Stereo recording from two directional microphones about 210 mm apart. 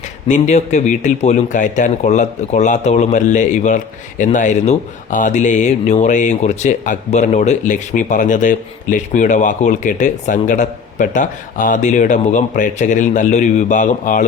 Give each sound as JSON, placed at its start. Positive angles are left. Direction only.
{"t": 0.3, "sound": "speech", "side_deg": 35}